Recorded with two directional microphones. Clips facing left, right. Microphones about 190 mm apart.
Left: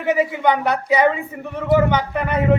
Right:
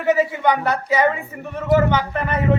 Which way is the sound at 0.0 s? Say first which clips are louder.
Even; 15° left (ahead or behind).